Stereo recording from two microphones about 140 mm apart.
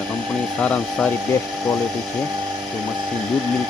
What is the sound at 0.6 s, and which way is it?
Speech, 5° left (ahead or behind).